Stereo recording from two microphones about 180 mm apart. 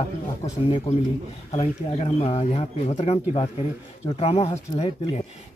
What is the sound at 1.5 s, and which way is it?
Speech, 35° left (ahead or behind).